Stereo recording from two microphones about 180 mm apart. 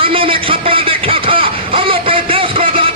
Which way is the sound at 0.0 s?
30° right (ahead or behind).